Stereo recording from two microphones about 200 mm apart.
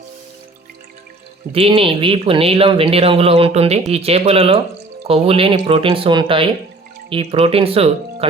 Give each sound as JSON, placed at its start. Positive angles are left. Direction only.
{"t": 1.5, "sound": "speech", "side_deg": -25}